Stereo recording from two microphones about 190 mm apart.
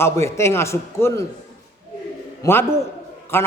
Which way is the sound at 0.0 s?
15° left (ahead or behind).